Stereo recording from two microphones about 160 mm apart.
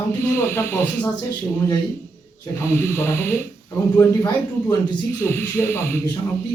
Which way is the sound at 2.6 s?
15° left (ahead or behind).